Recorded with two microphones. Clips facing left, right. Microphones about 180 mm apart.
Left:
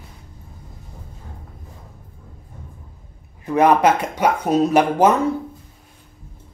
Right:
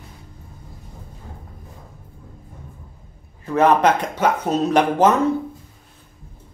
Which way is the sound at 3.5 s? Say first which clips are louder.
Left 1 dB; 15° left (ahead or behind).